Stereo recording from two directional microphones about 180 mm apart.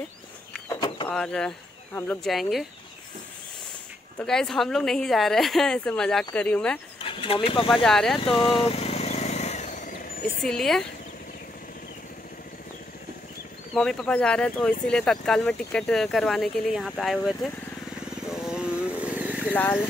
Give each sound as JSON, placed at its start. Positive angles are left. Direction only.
{"t": 0.7, "sound": "a sound", "side_deg": 25}
{"t": 1.0, "sound": "speech", "side_deg": 5}
{"t": 4.2, "sound": "speech", "side_deg": 5}
{"t": 7.0, "sound": "speech", "side_deg": 30}
{"t": 7.7, "sound": "speech", "side_deg": 0}
{"t": 8.2, "sound": "vehicle", "side_deg": 30}
{"t": 10.4, "sound": "speech", "side_deg": 0}
{"t": 13.7, "sound": "speech", "side_deg": 0}
{"t": 18.3, "sound": "motorcycle", "side_deg": -5}
{"t": 19.5, "sound": "speech", "side_deg": 10}